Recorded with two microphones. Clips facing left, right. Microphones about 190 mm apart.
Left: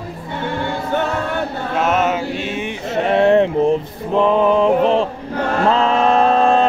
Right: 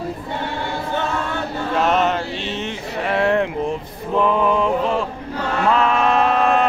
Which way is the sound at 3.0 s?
25° left (ahead or behind).